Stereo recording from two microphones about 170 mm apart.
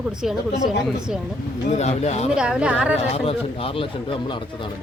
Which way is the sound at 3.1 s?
35° left (ahead or behind).